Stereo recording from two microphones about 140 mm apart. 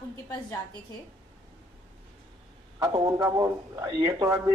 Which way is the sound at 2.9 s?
30° right (ahead or behind).